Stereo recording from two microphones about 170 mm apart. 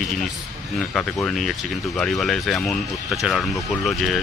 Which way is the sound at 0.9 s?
5° left (ahead or behind).